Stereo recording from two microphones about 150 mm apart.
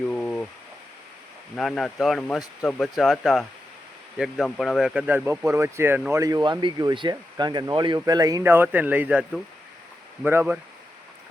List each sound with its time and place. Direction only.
0.1 s a sound: 5° left (ahead or behind)
1.5 s speech: centre (ahead or behind)
10.2 s speech: 10° right (ahead or behind)